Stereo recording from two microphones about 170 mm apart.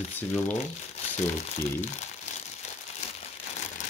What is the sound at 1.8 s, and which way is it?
Speech, 40° left (ahead or behind).